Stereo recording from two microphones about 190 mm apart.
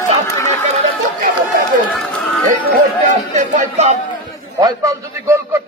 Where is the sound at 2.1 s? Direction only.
Centre (ahead or behind).